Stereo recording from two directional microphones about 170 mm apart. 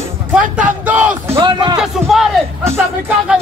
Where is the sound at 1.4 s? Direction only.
25° right (ahead or behind).